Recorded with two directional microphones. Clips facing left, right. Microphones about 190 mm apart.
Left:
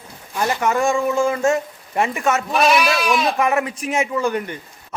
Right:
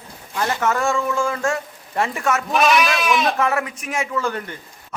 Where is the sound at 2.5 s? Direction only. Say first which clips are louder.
Even; centre (ahead or behind).